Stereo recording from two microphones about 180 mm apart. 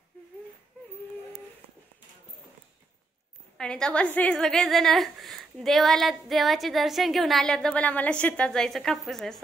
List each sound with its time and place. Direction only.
3.5 s a woman's voice: 5° left (ahead or behind)